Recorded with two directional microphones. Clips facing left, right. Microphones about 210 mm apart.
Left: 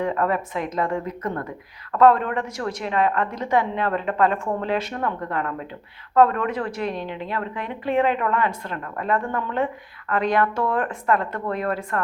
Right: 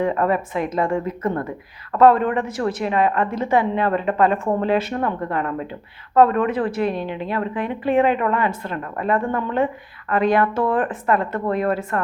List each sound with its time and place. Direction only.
0.0 s a woman's voice: 10° right (ahead or behind)